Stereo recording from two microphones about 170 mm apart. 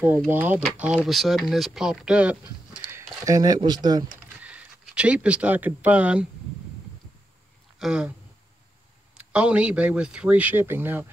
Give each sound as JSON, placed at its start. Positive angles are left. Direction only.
{"t": 0.3, "sound": "speech", "side_deg": -10}
{"t": 3.2, "sound": "speech", "side_deg": -20}
{"t": 4.4, "sound": "speech", "side_deg": -5}
{"t": 7.8, "sound": "speech", "side_deg": -5}
{"t": 9.1, "sound": "speech", "side_deg": -5}